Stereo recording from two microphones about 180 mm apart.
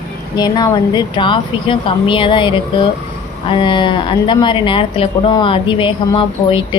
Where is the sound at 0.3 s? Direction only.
20° left (ahead or behind).